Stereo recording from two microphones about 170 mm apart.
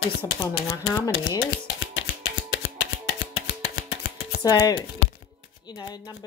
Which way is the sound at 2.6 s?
75° left (ahead or behind).